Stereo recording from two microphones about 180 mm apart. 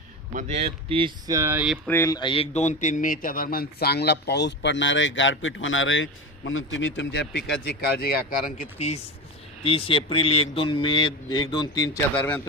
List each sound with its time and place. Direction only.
0.3 s speech: 35° right (ahead or behind)
1.3 s speech: 15° right (ahead or behind)
1.9 s a man's voice: 20° left (ahead or behind); by 8.6 s 55° left (ahead or behind)
9.6 s a man's voice: 30° left (ahead or behind)
12.1 s speech: 10° left (ahead or behind)